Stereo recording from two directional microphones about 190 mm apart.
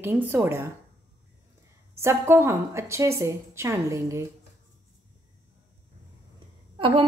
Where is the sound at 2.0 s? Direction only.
15° right (ahead or behind).